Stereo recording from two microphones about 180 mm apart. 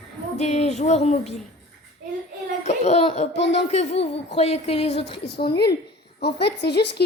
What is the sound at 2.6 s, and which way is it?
Speech, 40° left (ahead or behind).